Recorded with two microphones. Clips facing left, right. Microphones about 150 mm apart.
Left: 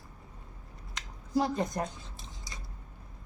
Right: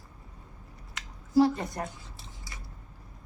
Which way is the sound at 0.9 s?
20° left (ahead or behind).